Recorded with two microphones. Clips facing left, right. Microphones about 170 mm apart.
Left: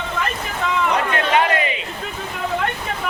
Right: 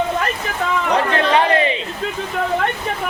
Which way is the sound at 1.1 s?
30° right (ahead or behind).